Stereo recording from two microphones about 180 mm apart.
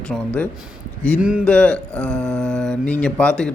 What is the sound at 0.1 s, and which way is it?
Speech, centre (ahead or behind).